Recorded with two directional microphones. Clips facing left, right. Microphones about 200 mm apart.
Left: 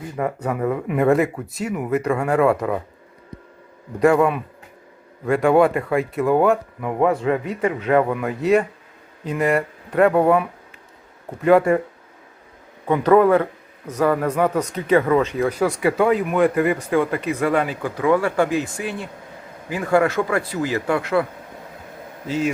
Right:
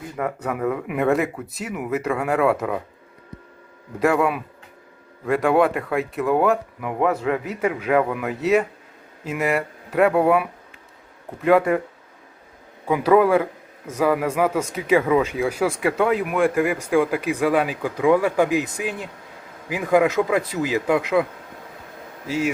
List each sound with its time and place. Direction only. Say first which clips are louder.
0.4 s speech: left 1 dB; centre (ahead or behind)
4.0 s speech: left 4 dB; 5° right (ahead or behind)
12.9 s speech: left 2 dB; 5° right (ahead or behind)
22.3 s speech: left 1 dB; 10° right (ahead or behind)